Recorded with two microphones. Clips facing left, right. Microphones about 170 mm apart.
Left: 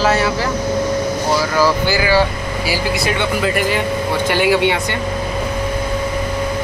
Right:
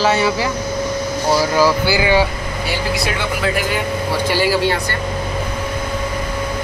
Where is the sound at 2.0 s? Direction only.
20° right (ahead or behind).